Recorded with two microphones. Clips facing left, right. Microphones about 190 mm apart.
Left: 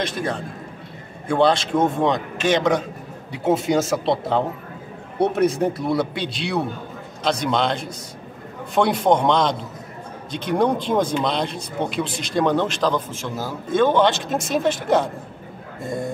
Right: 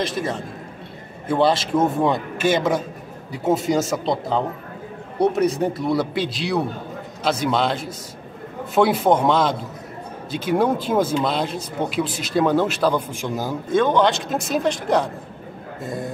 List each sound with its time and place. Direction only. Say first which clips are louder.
0.0 s speech: right 1 dB; centre (ahead or behind)
5.2 s speech: even; centre (ahead or behind)
13.7 s speech: left 1 dB; centre (ahead or behind)